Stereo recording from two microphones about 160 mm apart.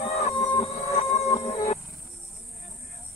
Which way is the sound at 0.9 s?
40° left (ahead or behind).